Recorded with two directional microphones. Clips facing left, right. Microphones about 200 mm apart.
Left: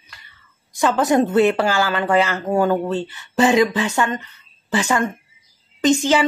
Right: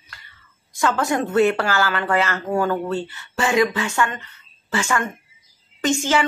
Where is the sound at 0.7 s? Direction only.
20° left (ahead or behind).